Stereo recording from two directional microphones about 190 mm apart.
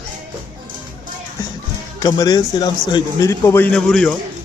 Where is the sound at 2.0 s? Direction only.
20° left (ahead or behind); by 4.2 s 5° left (ahead or behind).